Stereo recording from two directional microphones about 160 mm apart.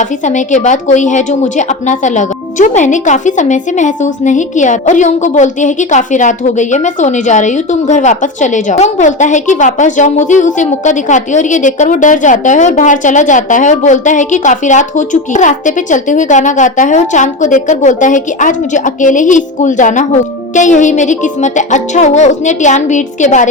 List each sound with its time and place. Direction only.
0.0 s a woman's voice: 50° left (ahead or behind)